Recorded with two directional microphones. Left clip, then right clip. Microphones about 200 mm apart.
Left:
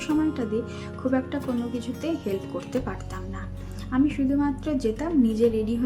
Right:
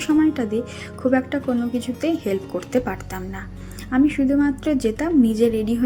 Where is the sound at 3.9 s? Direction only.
15° right (ahead or behind).